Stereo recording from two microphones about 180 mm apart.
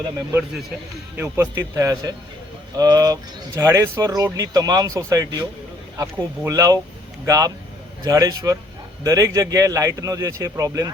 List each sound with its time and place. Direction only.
1.2 s speech: 15° right (ahead or behind)